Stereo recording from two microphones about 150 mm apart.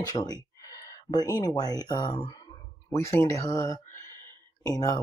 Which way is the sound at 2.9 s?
20° left (ahead or behind).